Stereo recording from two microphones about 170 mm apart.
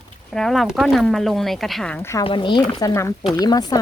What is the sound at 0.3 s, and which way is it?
Speech, centre (ahead or behind).